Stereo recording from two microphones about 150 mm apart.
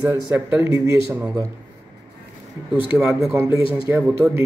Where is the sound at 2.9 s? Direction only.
5° right (ahead or behind).